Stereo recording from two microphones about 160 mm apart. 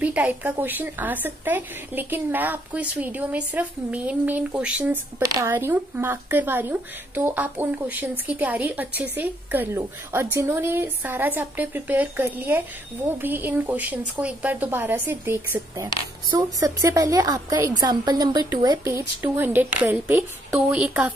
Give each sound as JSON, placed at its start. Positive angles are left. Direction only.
{"t": 0.0, "sound": "a woman's voice", "side_deg": -10}